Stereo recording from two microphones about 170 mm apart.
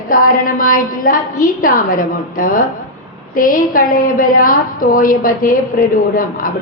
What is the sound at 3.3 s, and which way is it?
A woman's voice, 55° left (ahead or behind).